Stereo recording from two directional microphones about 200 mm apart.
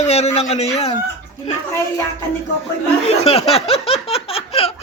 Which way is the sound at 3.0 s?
30° left (ahead or behind).